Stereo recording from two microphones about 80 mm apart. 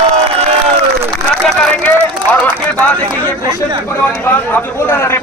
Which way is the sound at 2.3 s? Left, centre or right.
Left.